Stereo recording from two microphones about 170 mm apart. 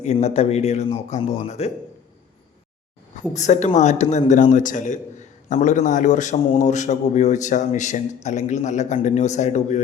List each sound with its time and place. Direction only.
0.0 s speech: 40° left (ahead or behind)
3.3 s a man's voice: 45° left (ahead or behind)